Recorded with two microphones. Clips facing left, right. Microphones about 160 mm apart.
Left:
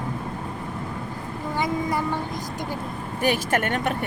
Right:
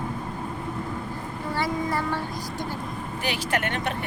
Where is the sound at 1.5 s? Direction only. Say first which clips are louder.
Left 2 dB; 15° left (ahead or behind).